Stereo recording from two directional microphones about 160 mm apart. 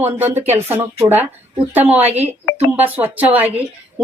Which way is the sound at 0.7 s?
25° right (ahead or behind).